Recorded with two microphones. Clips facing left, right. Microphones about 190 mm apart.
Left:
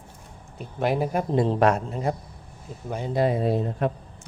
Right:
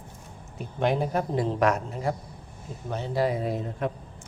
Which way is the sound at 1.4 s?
30° left (ahead or behind).